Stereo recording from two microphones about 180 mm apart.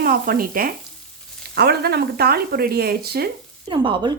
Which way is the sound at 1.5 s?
65° right (ahead or behind).